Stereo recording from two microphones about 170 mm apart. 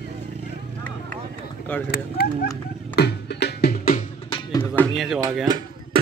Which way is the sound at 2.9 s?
75° left (ahead or behind).